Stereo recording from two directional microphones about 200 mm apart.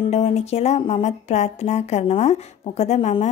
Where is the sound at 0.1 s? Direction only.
35° left (ahead or behind).